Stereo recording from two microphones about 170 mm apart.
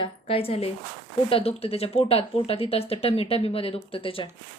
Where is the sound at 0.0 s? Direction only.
35° left (ahead or behind).